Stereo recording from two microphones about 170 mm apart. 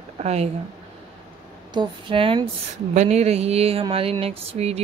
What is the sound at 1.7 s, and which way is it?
A woman's voice, 30° right (ahead or behind).